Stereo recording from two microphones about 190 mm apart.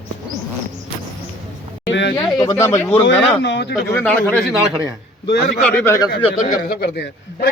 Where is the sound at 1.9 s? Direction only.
70° left (ahead or behind).